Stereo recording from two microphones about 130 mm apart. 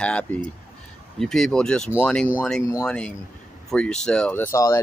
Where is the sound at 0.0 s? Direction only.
10° left (ahead or behind).